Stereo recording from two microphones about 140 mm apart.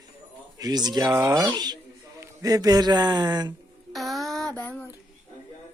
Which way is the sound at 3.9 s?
Centre (ahead or behind).